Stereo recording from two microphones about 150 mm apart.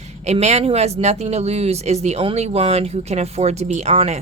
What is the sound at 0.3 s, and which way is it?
Speech, 50° right (ahead or behind).